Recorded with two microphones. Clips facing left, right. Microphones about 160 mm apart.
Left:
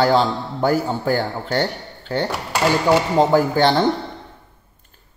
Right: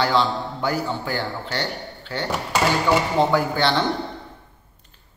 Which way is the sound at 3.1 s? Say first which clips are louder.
Left 4 dB; 45° left (ahead or behind).